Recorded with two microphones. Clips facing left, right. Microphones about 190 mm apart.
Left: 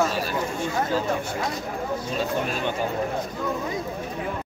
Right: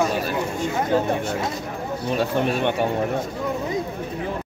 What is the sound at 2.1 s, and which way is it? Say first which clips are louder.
Speech: right 7 dB; 65° right (ahead or behind).